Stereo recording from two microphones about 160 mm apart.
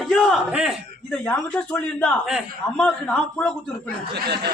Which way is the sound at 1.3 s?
10° left (ahead or behind).